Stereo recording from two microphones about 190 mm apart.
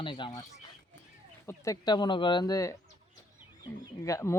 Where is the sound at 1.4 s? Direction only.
15° left (ahead or behind).